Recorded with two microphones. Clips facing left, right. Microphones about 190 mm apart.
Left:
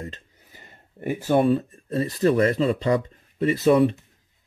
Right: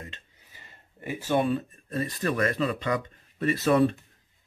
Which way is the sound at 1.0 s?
50° left (ahead or behind).